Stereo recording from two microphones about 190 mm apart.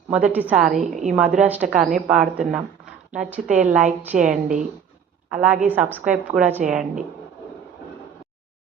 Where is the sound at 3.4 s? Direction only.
40° right (ahead or behind).